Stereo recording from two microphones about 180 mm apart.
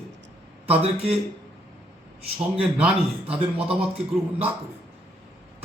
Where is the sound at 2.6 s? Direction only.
5° right (ahead or behind).